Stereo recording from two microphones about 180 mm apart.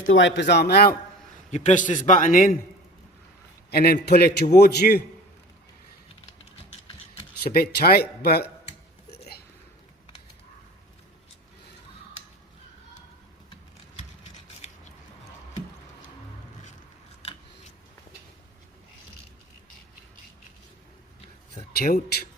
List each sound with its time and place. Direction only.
0.1 s speech: 90° left; by 0.9 s 60° left (ahead or behind)
1.5 s a man's voice: 40° left (ahead or behind)
3.7 s a man's voice: 60° left (ahead or behind)
7.4 s a man's voice: 60° left (ahead or behind)
21.7 s a man's voice: 60° left (ahead or behind)